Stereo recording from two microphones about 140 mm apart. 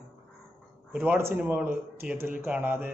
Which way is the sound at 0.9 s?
10° right (ahead or behind).